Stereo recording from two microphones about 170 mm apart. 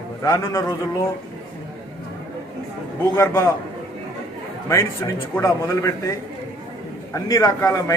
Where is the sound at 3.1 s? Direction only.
15° left (ahead or behind).